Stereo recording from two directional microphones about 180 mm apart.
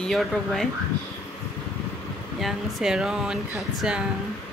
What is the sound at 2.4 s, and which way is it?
Speech, 5° right (ahead or behind).